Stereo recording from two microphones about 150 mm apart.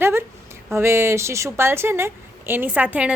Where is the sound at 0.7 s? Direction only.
15° right (ahead or behind).